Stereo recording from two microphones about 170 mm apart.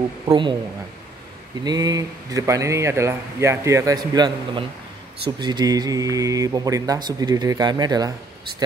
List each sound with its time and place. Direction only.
0.3 s speech: 25° right (ahead or behind)
1.6 s speech: 25° right (ahead or behind)